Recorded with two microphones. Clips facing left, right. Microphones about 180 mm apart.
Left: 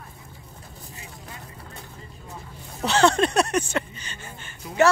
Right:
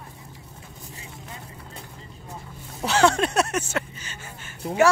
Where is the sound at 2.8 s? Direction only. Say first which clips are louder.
Left 1 dB; 10° right (ahead or behind).